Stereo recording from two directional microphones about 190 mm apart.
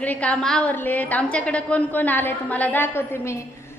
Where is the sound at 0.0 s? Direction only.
5° left (ahead or behind).